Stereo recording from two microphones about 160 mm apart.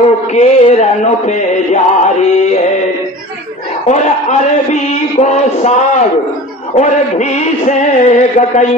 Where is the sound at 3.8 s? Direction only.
45° left (ahead or behind).